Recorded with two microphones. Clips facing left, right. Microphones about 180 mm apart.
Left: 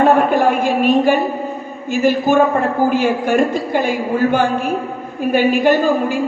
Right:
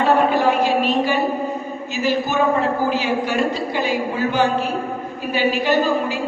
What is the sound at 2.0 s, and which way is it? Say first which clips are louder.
A woman's voice: left 5 dB; 50° left (ahead or behind).